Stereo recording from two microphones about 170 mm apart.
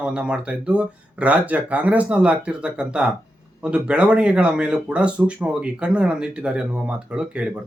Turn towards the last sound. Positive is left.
turn(degrees=-5)  # may be behind; listen again after turning